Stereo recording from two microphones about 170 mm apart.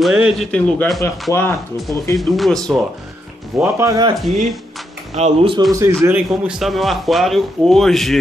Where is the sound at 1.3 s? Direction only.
15° left (ahead or behind).